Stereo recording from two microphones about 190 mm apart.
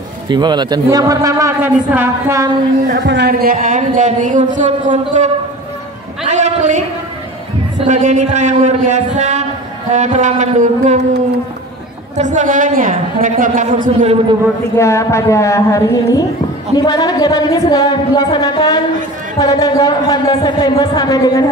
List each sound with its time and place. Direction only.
0.3 s a man's voice: 25° right (ahead or behind)
3.0 s speech: 65° right (ahead or behind)
3.5 s a woman's voice: 40° right (ahead or behind)
6.2 s a sound: 35° right (ahead or behind)
7.8 s a woman's voice: 40° right (ahead or behind)
12.2 s a woman's voice: 40° right (ahead or behind)
14.8 s a woman's voice: 15° left (ahead or behind)